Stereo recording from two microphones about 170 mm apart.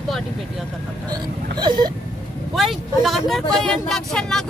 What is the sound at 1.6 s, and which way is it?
Vehicle, 25° right (ahead or behind).